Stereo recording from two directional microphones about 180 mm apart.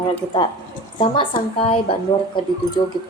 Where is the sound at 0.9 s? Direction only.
25° left (ahead or behind).